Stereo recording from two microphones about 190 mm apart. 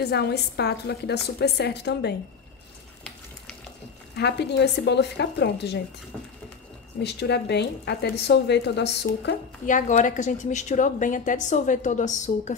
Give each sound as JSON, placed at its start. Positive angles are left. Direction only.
{"t": 0.0, "sound": "a woman's voice", "side_deg": 60}
{"t": 4.2, "sound": "a woman's voice", "side_deg": 60}
{"t": 7.0, "sound": "a woman's voice", "side_deg": 60}
{"t": 9.7, "sound": "a woman's voice", "side_deg": 40}